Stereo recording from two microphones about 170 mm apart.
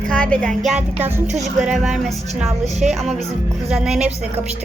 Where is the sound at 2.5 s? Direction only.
40° right (ahead or behind).